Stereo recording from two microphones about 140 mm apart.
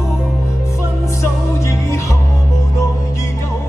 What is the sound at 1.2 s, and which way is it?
Music, 20° left (ahead or behind).